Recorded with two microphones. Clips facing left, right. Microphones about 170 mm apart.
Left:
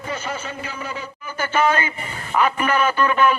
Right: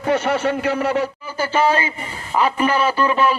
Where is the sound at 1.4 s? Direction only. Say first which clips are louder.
Right 2 dB; 30° right (ahead or behind).